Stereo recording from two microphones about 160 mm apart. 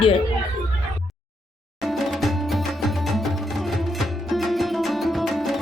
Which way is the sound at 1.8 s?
Centre (ahead or behind).